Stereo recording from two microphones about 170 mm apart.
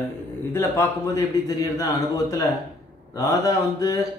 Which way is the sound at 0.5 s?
15° left (ahead or behind).